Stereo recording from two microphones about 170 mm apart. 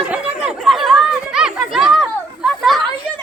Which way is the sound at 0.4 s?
Centre (ahead or behind).